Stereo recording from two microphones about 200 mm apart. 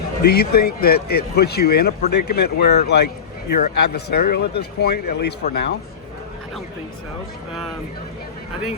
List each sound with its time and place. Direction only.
0.2 s speech: 50° left (ahead or behind)